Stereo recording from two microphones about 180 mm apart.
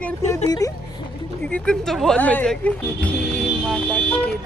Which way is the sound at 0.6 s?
20° left (ahead or behind).